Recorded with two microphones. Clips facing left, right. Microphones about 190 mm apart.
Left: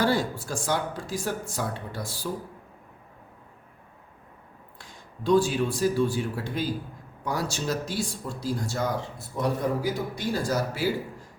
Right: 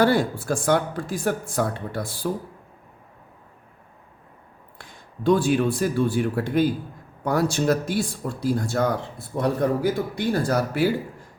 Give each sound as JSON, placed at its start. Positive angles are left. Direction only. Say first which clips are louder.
{"t": 0.0, "sound": "speech", "louder": "right 5 dB", "side_deg": -60}
{"t": 4.8, "sound": "a man's voice", "louder": "right 8 dB", "side_deg": -60}